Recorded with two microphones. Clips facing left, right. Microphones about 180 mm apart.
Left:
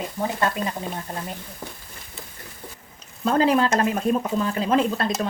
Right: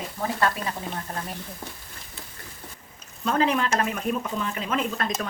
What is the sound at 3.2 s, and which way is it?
Speech, 35° left (ahead or behind).